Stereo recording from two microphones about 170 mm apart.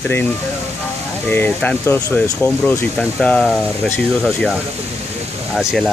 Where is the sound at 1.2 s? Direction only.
10° left (ahead or behind).